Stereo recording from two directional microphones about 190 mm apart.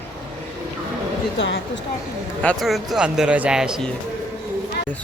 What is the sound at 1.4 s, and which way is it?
Speech, 70° left (ahead or behind).